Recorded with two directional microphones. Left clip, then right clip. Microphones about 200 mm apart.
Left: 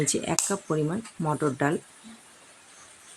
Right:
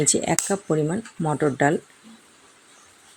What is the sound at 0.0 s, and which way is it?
Speech, 15° right (ahead or behind).